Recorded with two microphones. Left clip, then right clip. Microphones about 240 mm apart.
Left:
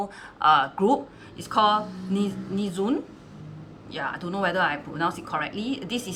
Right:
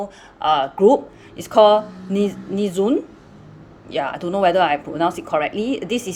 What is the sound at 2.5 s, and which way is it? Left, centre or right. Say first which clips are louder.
Speech: right 8 dB; centre.